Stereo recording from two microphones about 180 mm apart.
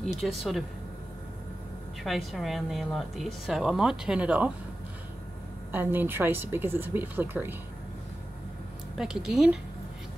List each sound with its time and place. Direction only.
0.0 s speech: centre (ahead or behind)
2.0 s speech: centre (ahead or behind)
5.7 s speech: 10° right (ahead or behind)
8.9 s speech: 5° right (ahead or behind)